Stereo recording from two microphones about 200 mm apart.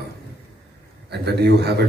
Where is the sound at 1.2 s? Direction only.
55° right (ahead or behind).